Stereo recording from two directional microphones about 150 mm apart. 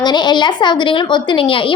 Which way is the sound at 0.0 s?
30° left (ahead or behind).